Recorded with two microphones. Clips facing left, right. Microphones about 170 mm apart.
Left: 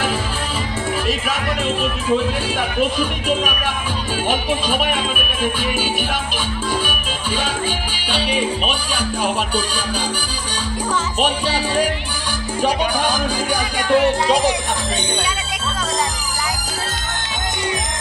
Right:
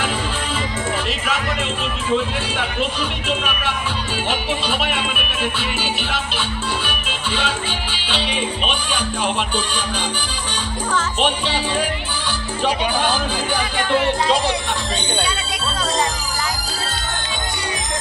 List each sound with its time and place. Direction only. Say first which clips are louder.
3.0 s speech: left 4 dB; 45° left (ahead or behind)
5.4 s speech: left 4 dB; 45° left (ahead or behind)
6.9 s music: left 2 dB; 45° left (ahead or behind)
11.1 s music: left 2 dB; 10° left (ahead or behind)
13.7 s music: left 4 dB; 15° left (ahead or behind)